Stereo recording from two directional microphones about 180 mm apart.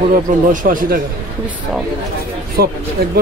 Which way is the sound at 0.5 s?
45° right (ahead or behind).